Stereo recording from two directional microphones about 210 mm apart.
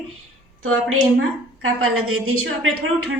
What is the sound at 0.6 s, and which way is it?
A woman's voice, 85° right.